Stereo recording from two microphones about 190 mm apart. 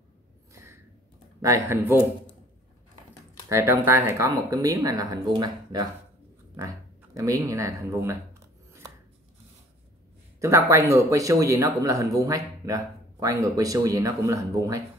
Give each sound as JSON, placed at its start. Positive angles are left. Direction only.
{"t": 0.5, "sound": "a sound", "side_deg": -15}
{"t": 1.4, "sound": "speech", "side_deg": -15}
{"t": 3.4, "sound": "speech", "side_deg": -15}
{"t": 7.2, "sound": "speech", "side_deg": -15}
{"t": 10.4, "sound": "speech", "side_deg": -15}